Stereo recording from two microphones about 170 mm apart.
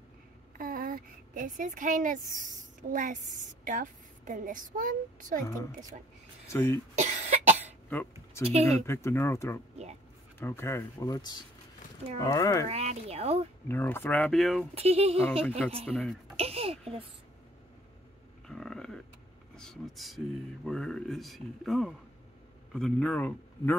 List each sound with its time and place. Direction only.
0.6 s speech: 55° right (ahead or behind)
6.5 s speech: 15° left (ahead or behind)
7.0 s cough: 45° right (ahead or behind)
7.9 s speech: 10° left (ahead or behind)
8.5 s speech: 40° right (ahead or behind)
8.8 s speech: 15° left (ahead or behind)
12.6 s speech: 40° right (ahead or behind)
13.7 s speech: 10° left (ahead or behind)
14.8 s speech: 35° right (ahead or behind)
15.9 s speech: centre (ahead or behind)
16.3 s a sound: 35° right (ahead or behind)
18.5 s a sound: 5° left (ahead or behind)
19.5 s a man's voice: 5° left (ahead or behind)